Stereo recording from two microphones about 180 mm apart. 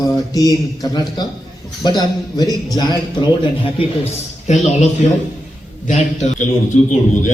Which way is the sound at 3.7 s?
35° left (ahead or behind).